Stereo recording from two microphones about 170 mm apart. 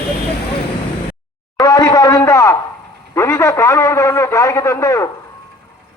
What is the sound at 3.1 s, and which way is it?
A man's voice, 15° left (ahead or behind).